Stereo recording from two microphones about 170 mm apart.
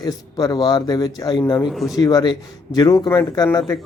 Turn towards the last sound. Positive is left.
turn(degrees=20)  # may be behind; listen again after turning